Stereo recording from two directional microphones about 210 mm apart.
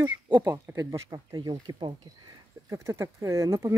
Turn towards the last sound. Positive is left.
turn(degrees=-15)  # may be behind; listen again after turning